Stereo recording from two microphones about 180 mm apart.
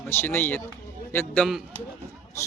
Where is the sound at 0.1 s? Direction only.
10° left (ahead or behind).